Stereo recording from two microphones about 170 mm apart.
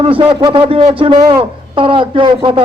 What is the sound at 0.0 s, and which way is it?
Speech, 30° right (ahead or behind).